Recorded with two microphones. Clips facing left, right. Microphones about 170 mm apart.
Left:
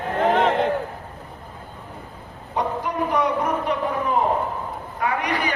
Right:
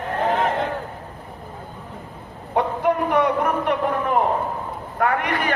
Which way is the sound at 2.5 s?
60° right (ahead or behind).